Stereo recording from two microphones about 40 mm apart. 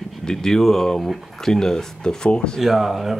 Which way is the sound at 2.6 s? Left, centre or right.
Centre.